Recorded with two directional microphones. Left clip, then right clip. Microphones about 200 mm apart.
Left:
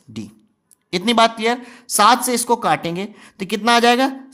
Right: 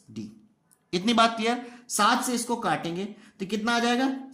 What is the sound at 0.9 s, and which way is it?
Speech, 30° left (ahead or behind).